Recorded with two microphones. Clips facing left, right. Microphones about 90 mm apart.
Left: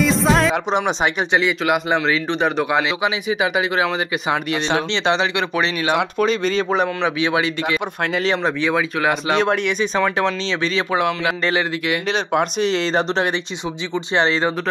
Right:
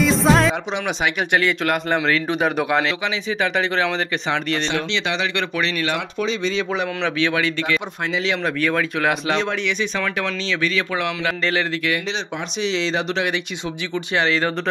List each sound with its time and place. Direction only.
0.0 s music: centre (ahead or behind)
0.7 s speech: 40° left (ahead or behind)
1.6 s speech: 5° left (ahead or behind)
3.0 s speech: 15° left (ahead or behind)
4.9 s speech: 30° left (ahead or behind)
6.1 s speech: 50° left (ahead or behind)
7.0 s speech: 20° left (ahead or behind)
8.1 s speech: 45° left (ahead or behind)
8.5 s speech: 20° left (ahead or behind)
9.4 s speech: 50° left (ahead or behind)
9.9 s speech: 25° left (ahead or behind)
12.1 s speech: 50° left (ahead or behind)
13.9 s speech: 30° left (ahead or behind)